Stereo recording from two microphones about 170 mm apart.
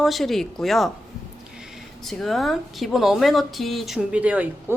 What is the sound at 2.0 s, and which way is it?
A woman's voice, centre (ahead or behind).